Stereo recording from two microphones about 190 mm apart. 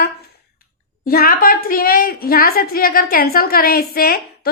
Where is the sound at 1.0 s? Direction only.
50° left (ahead or behind).